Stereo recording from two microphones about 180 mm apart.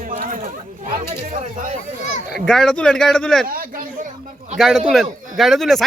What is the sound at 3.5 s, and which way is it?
Speech, 50° right (ahead or behind).